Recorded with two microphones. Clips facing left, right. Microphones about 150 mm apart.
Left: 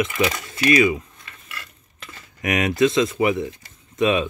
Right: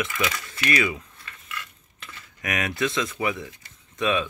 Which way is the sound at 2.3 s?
20° left (ahead or behind).